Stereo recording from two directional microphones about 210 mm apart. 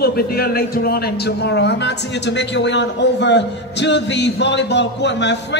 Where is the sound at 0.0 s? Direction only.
45° left (ahead or behind).